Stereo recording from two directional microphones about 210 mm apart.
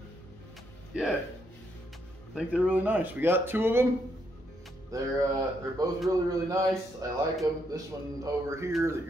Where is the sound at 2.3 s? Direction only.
5° right (ahead or behind).